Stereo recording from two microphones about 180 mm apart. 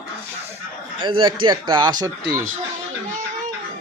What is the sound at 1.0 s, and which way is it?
Speech, 30° right (ahead or behind).